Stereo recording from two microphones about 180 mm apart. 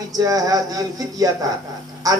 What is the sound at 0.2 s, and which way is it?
A man's voice, 20° right (ahead or behind).